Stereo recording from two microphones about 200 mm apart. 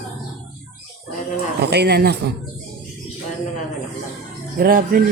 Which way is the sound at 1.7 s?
55° right (ahead or behind).